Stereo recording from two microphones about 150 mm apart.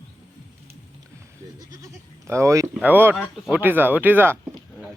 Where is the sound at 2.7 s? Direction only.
10° right (ahead or behind).